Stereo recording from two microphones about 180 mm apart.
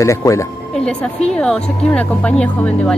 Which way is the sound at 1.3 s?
5° left (ahead or behind).